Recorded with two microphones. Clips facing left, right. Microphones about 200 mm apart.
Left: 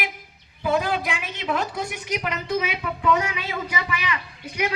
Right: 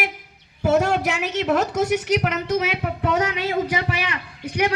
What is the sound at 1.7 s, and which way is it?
Speech, 75° right (ahead or behind).